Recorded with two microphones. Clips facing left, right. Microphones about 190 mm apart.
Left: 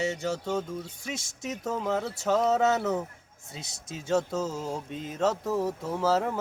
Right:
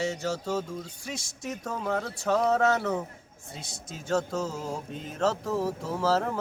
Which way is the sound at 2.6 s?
20° left (ahead or behind).